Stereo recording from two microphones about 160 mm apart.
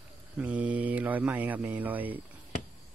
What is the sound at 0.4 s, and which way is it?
Speech, 10° right (ahead or behind).